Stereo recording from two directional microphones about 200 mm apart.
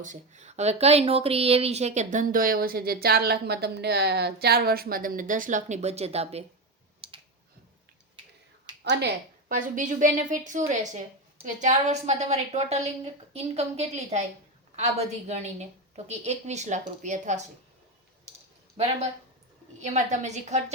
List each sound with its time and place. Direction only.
0.0 s speech: 35° right (ahead or behind)
8.8 s speech: 55° right (ahead or behind); by 17.5 s 35° right (ahead or behind)
18.8 s speech: 30° right (ahead or behind)